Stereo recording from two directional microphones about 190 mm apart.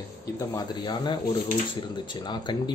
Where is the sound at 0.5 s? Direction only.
25° left (ahead or behind).